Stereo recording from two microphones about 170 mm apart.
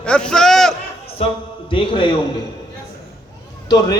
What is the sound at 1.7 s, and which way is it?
Speech, 30° left (ahead or behind).